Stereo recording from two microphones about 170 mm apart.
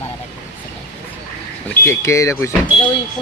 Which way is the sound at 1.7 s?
15° left (ahead or behind).